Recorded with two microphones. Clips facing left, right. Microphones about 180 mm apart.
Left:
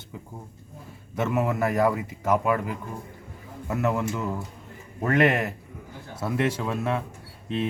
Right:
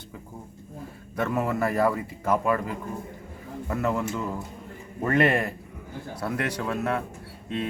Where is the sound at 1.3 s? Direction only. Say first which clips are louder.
Left 1 dB; 5° left (ahead or behind).